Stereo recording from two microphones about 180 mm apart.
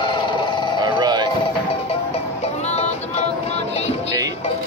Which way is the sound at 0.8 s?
25° right (ahead or behind).